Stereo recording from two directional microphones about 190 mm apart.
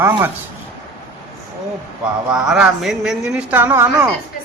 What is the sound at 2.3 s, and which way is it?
Speech, centre (ahead or behind).